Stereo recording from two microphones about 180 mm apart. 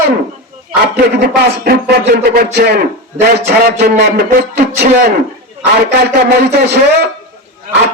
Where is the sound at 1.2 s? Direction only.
60° right (ahead or behind).